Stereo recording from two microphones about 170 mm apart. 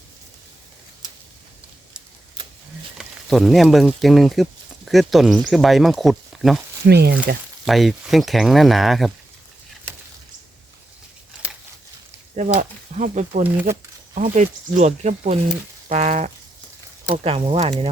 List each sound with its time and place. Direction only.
3.0 s speech: centre (ahead or behind)
6.8 s speech: 70° right (ahead or behind)
7.6 s speech: centre (ahead or behind)
12.4 s speech: 45° right (ahead or behind)
13.4 s speech: 10° right (ahead or behind)
14.2 s speech: 45° right (ahead or behind)